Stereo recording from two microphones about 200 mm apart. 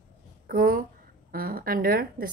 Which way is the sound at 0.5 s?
45° right (ahead or behind).